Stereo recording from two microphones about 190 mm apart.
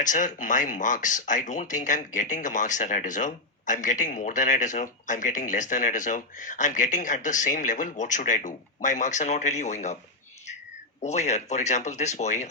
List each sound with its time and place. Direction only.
0.0 s speech: 40° left (ahead or behind)
11.0 s speech: 35° left (ahead or behind)